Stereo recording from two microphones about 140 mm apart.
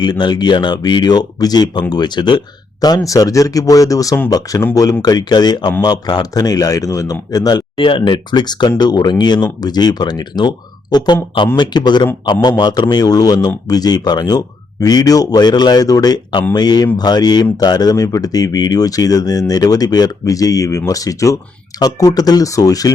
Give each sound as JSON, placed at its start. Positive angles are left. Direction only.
{"t": 0.0, "sound": "a man's voice", "side_deg": 30}